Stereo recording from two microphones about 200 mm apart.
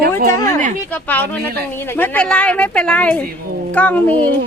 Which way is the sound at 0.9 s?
10° left (ahead or behind).